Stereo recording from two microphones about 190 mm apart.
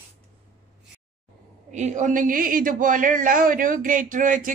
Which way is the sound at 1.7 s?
40° right (ahead or behind).